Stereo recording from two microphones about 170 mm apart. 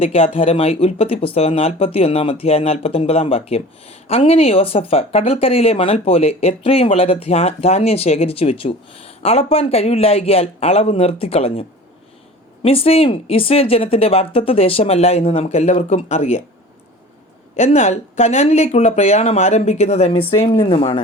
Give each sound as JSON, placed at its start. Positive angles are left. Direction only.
{"t": 0.0, "sound": "speech", "side_deg": 35}
{"t": 12.6, "sound": "speech", "side_deg": 35}
{"t": 17.6, "sound": "speech", "side_deg": 40}